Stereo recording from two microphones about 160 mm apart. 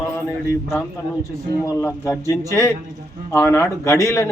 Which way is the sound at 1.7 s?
15° left (ahead or behind).